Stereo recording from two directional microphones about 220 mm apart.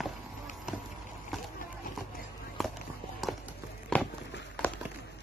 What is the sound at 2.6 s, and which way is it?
Run, centre (ahead or behind).